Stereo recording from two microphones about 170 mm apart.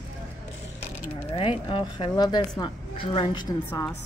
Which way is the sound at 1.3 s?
30° left (ahead or behind).